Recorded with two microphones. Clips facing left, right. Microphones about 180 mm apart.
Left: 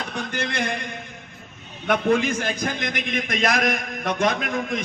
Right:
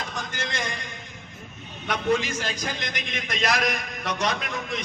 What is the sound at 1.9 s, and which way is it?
A man's voice, 55° left (ahead or behind).